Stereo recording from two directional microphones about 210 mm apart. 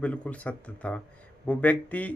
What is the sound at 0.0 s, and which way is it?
Speech, 5° left (ahead or behind).